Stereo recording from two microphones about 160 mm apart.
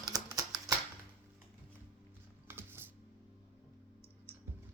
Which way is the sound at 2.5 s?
15° right (ahead or behind).